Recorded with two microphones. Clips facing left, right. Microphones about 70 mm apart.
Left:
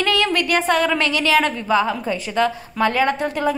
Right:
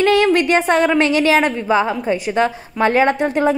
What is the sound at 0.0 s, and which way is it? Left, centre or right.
A woman's voice, right.